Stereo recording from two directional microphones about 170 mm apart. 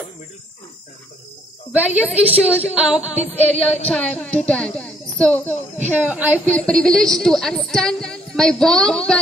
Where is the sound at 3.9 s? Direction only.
5° left (ahead or behind).